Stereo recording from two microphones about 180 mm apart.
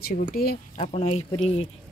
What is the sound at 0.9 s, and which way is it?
Speech, 35° left (ahead or behind).